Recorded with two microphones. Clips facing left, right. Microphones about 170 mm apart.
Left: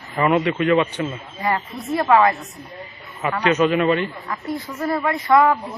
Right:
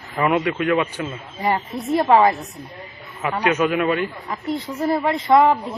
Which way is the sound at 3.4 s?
10° right (ahead or behind).